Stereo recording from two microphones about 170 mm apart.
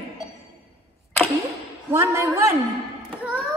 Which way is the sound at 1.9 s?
15° right (ahead or behind).